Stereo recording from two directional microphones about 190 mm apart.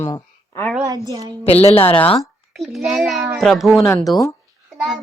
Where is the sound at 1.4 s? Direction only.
30° left (ahead or behind).